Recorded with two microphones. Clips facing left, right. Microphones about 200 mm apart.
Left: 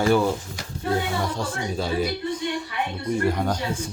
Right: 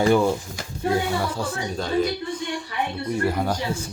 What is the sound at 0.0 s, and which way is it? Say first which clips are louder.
Speech: right 2 dB; 15° right (ahead or behind).